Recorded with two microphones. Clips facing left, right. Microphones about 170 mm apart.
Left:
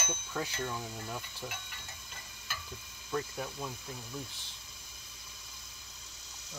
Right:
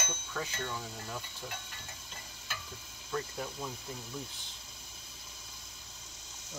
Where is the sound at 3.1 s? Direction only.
5° left (ahead or behind).